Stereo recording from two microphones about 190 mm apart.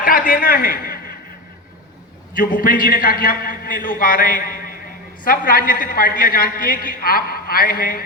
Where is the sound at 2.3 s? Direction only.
45° left (ahead or behind).